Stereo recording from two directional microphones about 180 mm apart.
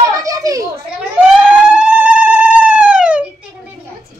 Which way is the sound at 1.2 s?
5° right (ahead or behind).